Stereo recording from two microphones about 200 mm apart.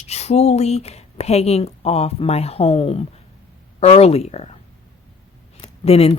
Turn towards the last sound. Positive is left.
turn(degrees=30)  # may be behind; listen again after turning